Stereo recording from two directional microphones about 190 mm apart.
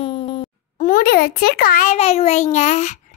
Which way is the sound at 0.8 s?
45° left (ahead or behind).